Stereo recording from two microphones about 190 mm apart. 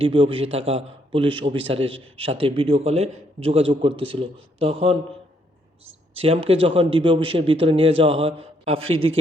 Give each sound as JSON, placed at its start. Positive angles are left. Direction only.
{"t": 0.0, "sound": "a man's voice", "side_deg": -30}
{"t": 6.1, "sound": "a man's voice", "side_deg": -30}